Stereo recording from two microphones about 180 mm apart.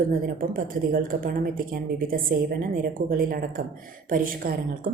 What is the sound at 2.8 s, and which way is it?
A woman's voice, 55° right (ahead or behind).